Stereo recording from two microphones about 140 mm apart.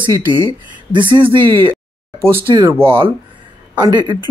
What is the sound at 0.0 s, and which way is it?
Speech, 35° right (ahead or behind).